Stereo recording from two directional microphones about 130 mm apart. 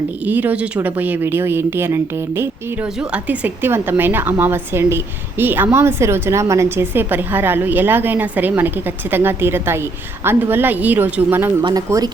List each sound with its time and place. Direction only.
0.3 s a woman's voice: 15° right (ahead or behind)
11.9 s speech: 25° right (ahead or behind)